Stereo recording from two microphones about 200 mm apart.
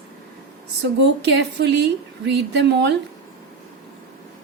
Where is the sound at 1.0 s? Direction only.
60° right (ahead or behind).